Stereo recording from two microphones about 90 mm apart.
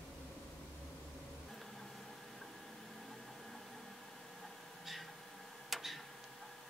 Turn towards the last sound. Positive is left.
turn(degrees=0)  # may be behind; listen again after turning